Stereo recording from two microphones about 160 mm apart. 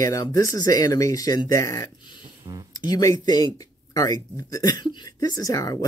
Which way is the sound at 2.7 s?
25° left (ahead or behind).